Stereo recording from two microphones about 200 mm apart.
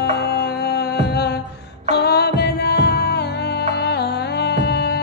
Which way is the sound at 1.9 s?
55° left (ahead or behind).